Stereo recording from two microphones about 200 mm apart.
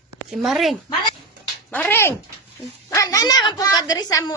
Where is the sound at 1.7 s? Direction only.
10° left (ahead or behind).